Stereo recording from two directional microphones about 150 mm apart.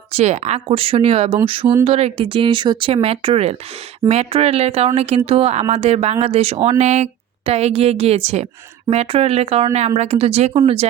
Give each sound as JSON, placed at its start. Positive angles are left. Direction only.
{"t": 0.1, "sound": "a woman's voice", "side_deg": -45}